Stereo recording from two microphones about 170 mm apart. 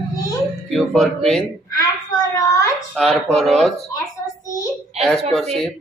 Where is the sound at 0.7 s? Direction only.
Centre (ahead or behind).